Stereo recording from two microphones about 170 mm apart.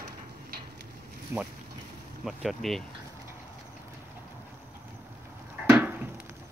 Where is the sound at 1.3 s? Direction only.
10° right (ahead or behind).